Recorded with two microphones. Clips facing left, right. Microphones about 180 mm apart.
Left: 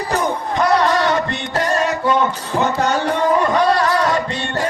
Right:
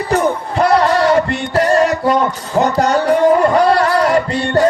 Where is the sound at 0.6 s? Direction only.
30° right (ahead or behind).